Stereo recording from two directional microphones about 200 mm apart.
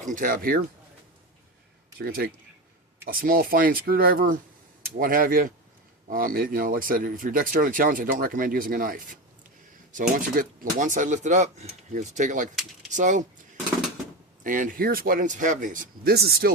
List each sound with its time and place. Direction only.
0.0 s speech: 40° right (ahead or behind)
2.0 s speech: 50° right (ahead or behind)
14.4 s speech: 40° right (ahead or behind)